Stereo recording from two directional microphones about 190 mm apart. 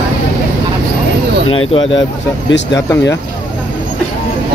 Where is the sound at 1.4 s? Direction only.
90° left.